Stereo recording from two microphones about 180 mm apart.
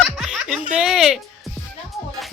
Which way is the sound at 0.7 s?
5° right (ahead or behind).